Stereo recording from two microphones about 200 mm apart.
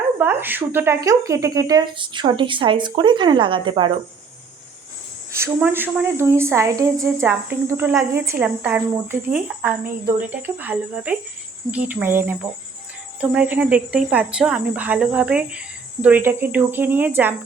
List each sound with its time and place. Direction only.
0.2 s speech: 10° right (ahead or behind)
5.3 s speech: 10° right (ahead or behind)